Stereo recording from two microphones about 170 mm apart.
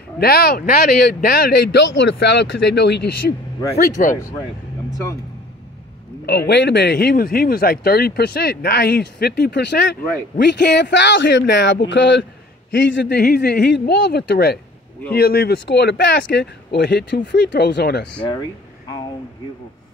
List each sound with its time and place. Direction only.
0.2 s speech: 65° left (ahead or behind)
4.0 s speech: 55° left (ahead or behind)
6.2 s a man's voice: 75° left (ahead or behind)
18.2 s speech: 25° left (ahead or behind)